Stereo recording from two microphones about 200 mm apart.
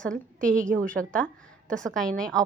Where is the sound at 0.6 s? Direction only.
40° right (ahead or behind).